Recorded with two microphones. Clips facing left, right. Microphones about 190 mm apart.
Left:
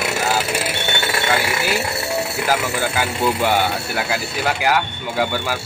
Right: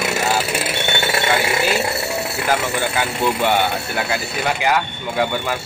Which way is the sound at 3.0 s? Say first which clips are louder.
Left 1 dB; 5° left (ahead or behind).